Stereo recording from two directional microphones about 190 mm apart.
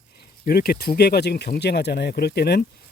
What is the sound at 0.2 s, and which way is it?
Speech, 55° left (ahead or behind).